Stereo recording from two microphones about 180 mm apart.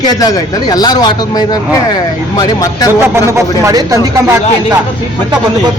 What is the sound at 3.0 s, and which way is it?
Speech, 15° right (ahead or behind).